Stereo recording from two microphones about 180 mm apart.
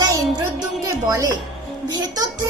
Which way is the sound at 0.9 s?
20° right (ahead or behind).